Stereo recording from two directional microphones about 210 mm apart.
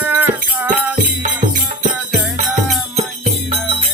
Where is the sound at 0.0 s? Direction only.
10° right (ahead or behind).